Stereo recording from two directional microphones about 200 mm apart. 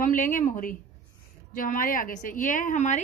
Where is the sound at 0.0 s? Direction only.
40° left (ahead or behind).